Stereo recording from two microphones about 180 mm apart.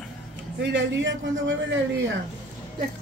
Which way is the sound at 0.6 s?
80° right.